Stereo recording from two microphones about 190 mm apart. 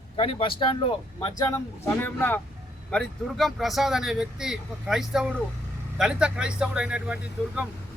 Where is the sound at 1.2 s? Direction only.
20° left (ahead or behind).